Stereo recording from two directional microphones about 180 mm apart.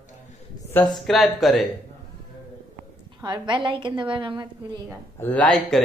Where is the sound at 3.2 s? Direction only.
25° right (ahead or behind).